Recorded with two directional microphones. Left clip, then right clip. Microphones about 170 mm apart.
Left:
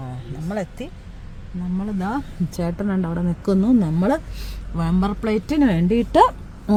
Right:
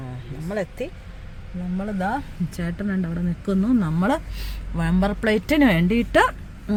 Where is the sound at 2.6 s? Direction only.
15° right (ahead or behind).